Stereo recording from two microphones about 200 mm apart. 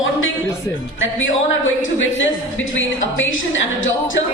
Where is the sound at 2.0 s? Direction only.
70° left (ahead or behind).